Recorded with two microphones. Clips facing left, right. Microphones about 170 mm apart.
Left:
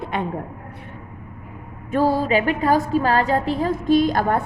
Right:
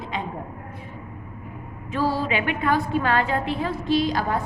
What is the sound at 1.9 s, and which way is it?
A woman's voice, 50° left (ahead or behind).